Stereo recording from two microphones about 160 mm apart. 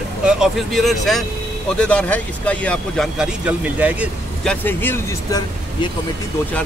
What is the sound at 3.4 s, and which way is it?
Speech, 10° right (ahead or behind).